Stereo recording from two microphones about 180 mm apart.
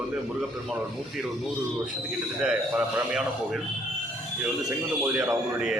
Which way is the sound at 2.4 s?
5° right (ahead or behind).